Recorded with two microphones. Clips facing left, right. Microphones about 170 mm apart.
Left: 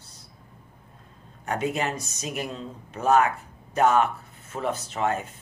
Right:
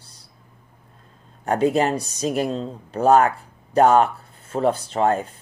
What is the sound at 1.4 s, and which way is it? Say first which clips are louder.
Speech: right 8 dB; 35° right (ahead or behind).